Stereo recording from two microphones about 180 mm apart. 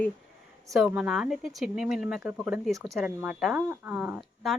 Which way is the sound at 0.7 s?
5° right (ahead or behind).